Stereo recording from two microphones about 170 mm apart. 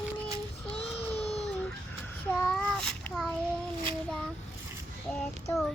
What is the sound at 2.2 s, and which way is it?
Child singing, 10° left (ahead or behind).